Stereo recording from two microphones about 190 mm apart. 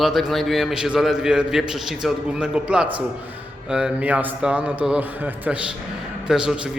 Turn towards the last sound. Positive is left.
turn(degrees=-5)  # may be behind; listen again after turning